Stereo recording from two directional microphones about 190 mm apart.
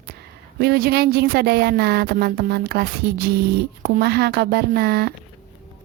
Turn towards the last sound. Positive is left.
turn(degrees=-55)  # may be behind; listen again after turning